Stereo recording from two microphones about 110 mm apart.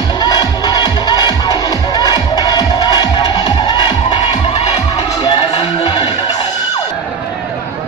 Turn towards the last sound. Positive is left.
turn(degrees=50)  # may be behind; listen again after turning